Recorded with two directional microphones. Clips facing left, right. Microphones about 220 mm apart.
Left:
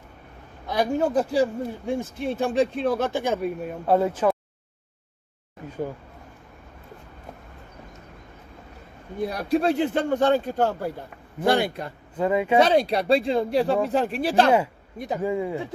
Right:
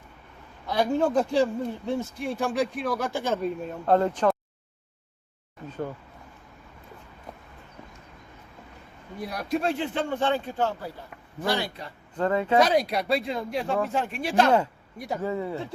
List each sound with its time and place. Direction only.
0.7 s speech: 15° left (ahead or behind)
1.9 s speech: 20° left (ahead or behind)
9.2 s speech: 30° left (ahead or behind)
11.4 s a man's voice: 55° left (ahead or behind)
12.1 s speech: 10° left (ahead or behind)
12.5 s speech: 30° left (ahead or behind)
14.9 s speech: 20° left (ahead or behind)